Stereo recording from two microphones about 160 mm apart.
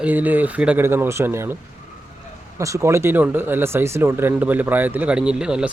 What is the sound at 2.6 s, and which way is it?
Speech, 20° right (ahead or behind).